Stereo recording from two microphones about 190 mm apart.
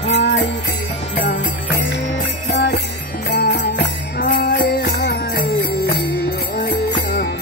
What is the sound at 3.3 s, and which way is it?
Jingle bell, 65° left (ahead or behind).